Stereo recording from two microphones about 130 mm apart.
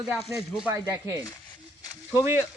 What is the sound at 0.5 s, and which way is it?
Speech, 5° right (ahead or behind).